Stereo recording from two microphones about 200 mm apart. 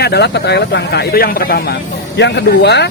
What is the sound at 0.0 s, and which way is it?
Speech, 55° left (ahead or behind).